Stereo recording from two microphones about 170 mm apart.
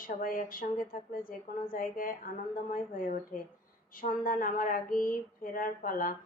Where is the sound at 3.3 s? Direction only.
55° left (ahead or behind).